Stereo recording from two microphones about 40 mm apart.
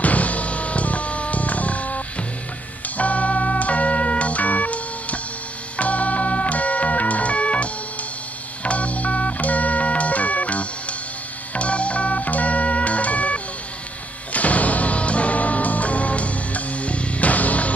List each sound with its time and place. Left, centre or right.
0.0 s music: left
11.5 s organ: left
14.3 s music: left